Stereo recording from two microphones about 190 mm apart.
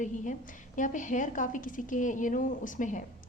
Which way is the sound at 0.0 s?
40° left (ahead or behind).